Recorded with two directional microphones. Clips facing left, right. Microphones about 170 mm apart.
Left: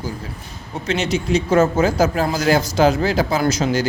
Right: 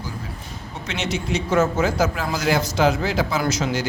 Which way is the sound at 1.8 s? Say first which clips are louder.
Left 4 dB; 35° left (ahead or behind).